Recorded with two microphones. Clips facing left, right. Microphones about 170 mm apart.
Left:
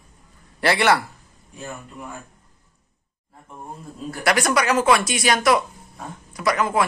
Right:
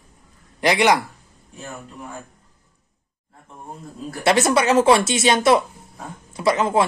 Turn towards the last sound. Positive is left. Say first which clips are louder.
# right 3 dB
turn(degrees=-25)  # may be behind; listen again after turning